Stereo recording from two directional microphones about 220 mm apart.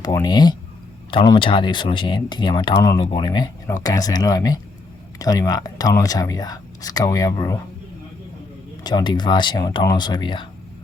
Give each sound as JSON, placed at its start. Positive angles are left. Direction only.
{"t": 0.0, "sound": "speech", "side_deg": 15}
{"t": 8.8, "sound": "speech", "side_deg": 20}